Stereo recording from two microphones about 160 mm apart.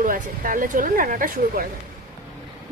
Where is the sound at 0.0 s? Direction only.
60° right (ahead or behind).